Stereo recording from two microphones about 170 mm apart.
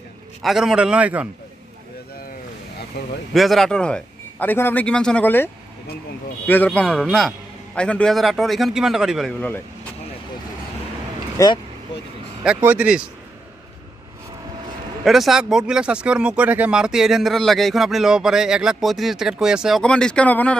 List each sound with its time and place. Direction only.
0.4 s speech: centre (ahead or behind)
2.9 s speech: 75° left (ahead or behind)
3.3 s a man's voice: centre (ahead or behind)
11.3 s speech: 25° left (ahead or behind)
12.5 s speech: 10° right (ahead or behind)
15.0 s speech: centre (ahead or behind)